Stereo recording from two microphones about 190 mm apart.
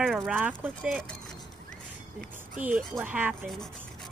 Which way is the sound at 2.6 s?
40° right (ahead or behind).